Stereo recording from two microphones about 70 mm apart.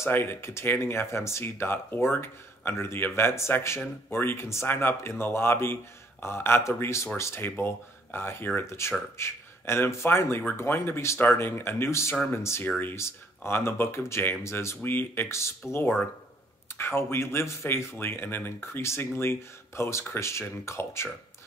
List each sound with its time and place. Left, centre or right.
0.0 s a man's voice: left
12.6 s speech: centre
12.9 s speech: left
14.8 s speech: left